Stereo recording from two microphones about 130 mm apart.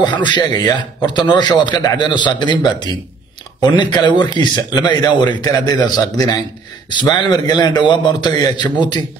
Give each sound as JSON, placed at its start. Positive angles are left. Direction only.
{"t": 0.0, "sound": "a man's voice", "side_deg": 35}